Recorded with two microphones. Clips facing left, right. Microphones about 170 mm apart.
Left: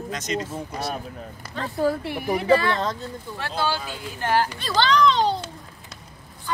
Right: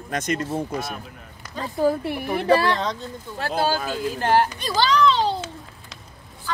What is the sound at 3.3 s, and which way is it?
Speech, 40° right (ahead or behind).